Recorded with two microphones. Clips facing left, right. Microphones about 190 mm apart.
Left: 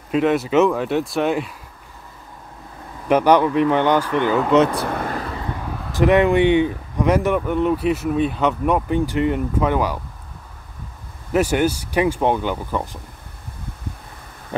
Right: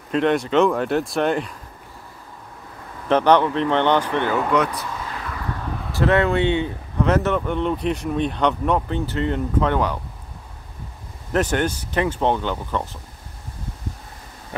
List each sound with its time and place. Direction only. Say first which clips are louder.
0.1 s speech: left 1 dB; 5° left (ahead or behind)
3.1 s speech: left 1 dB; 10° left (ahead or behind)
4.7 s vehicle: left 7 dB; 60° left (ahead or behind)
5.2 s vehicle: left 3 dB; 30° left (ahead or behind)
5.9 s speech: left 4 dB; 15° left (ahead or behind)
11.3 s speech: left 3 dB; 10° left (ahead or behind)